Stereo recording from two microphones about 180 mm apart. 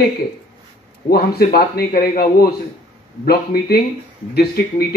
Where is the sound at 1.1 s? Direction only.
55° left (ahead or behind).